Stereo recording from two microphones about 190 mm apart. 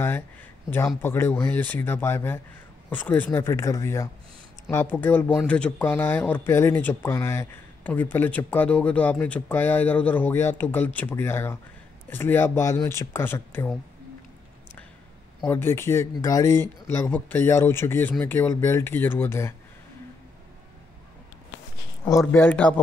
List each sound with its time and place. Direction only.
0.7 s speech: 10° left (ahead or behind)
15.4 s speech: 10° left (ahead or behind)
22.0 s speech: 15° left (ahead or behind)